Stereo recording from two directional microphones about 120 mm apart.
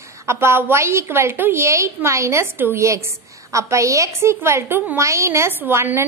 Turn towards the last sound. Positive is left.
turn(degrees=-20)  # may be behind; listen again after turning